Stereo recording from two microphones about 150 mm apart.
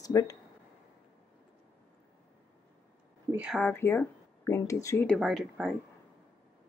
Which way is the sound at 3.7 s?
15° left (ahead or behind).